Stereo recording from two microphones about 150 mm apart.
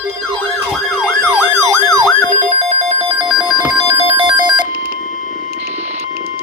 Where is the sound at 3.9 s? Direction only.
45° right (ahead or behind).